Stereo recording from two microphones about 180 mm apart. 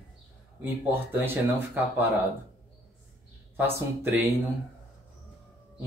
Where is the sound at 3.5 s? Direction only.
10° right (ahead or behind).